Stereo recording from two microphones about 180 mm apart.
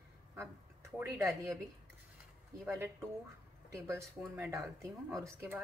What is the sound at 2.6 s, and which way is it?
Speech, 15° right (ahead or behind).